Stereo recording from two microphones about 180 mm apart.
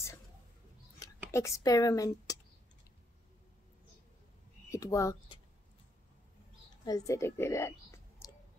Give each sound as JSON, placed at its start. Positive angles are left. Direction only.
{"t": 1.3, "sound": "speech", "side_deg": 15}
{"t": 4.6, "sound": "speech", "side_deg": 20}
{"t": 6.8, "sound": "speech", "side_deg": 20}